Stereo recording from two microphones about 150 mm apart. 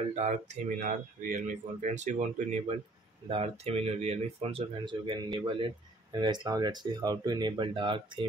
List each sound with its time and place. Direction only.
0.1 s speech: 50° right (ahead or behind)
3.3 s speech: 40° right (ahead or behind)